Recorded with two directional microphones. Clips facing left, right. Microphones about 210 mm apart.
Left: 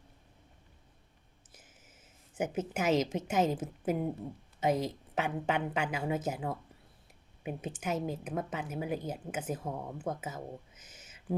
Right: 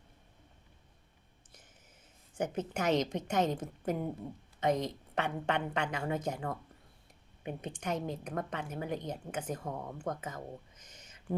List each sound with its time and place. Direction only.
1.5 s a woman's voice: 5° left (ahead or behind)